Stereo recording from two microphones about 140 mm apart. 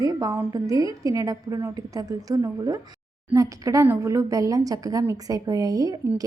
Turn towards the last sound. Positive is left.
turn(degrees=-25)  # may be behind; listen again after turning